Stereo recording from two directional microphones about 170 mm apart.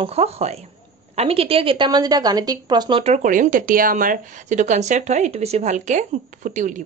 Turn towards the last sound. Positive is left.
turn(degrees=-50)  # may be behind; listen again after turning